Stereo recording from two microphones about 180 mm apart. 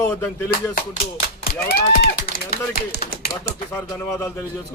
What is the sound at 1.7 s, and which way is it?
Speech, 60° left (ahead or behind).